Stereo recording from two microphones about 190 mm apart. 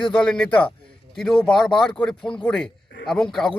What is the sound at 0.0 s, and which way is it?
A man's voice, 5° left (ahead or behind).